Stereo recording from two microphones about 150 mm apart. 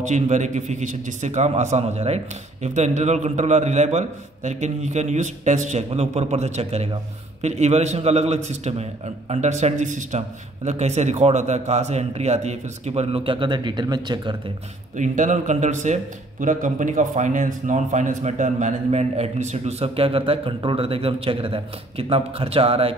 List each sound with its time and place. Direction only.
0.0 s a man's voice: 50° right (ahead or behind); by 14.3 s 30° right (ahead or behind)
15.0 s a man's voice: 55° right (ahead or behind); by 22.9 s 40° right (ahead or behind)